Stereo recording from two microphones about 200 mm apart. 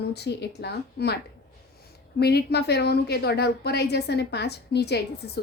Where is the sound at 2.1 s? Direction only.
55° left (ahead or behind).